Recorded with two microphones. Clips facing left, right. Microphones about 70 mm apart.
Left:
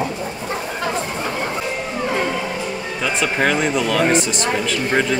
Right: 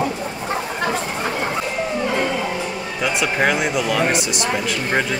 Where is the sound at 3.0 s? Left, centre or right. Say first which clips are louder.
Even; centre.